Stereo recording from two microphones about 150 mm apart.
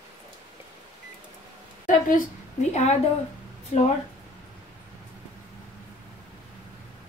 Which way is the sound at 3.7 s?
45° left (ahead or behind).